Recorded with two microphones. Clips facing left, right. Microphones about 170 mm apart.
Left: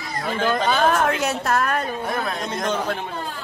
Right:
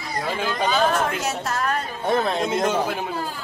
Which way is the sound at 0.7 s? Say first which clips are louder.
Even; 55° left (ahead or behind).